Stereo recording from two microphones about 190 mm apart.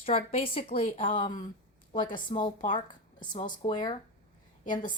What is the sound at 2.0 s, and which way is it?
A woman's voice, 45° left (ahead or behind).